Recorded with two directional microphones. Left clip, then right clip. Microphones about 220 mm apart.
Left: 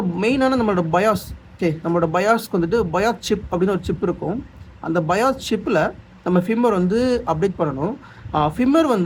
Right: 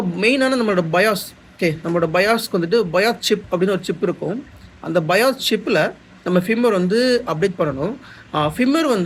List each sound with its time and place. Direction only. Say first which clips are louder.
0.2 s speech: right 2 dB; 20° left (ahead or behind)